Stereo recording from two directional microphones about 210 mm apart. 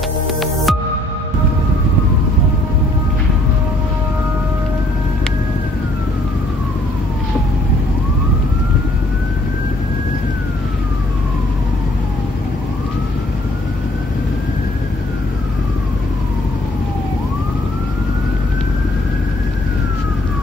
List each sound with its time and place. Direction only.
0.4 s music: centre (ahead or behind)